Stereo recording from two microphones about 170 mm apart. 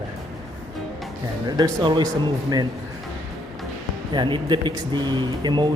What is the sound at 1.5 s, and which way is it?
Speech, 25° right (ahead or behind).